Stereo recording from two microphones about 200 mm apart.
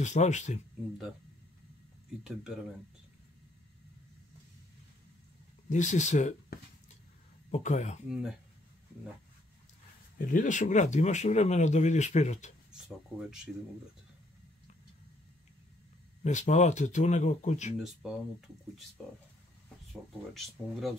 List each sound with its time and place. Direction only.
0.0 s speech: 35° left (ahead or behind)
2.2 s speech: centre (ahead or behind)
5.7 s speech: 35° left (ahead or behind)
7.5 s speech: 35° left (ahead or behind)
8.1 s speech: centre (ahead or behind)
10.1 s speech: 40° left (ahead or behind)
12.7 s speech: 5° right (ahead or behind)
16.3 s speech: 35° left (ahead or behind)
17.7 s speech: 5° right (ahead or behind)
19.9 s speech: centre (ahead or behind)